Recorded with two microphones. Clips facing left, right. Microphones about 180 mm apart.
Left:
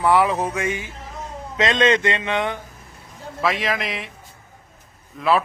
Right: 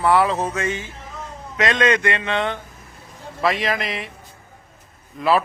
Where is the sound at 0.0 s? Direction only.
15° left (ahead or behind).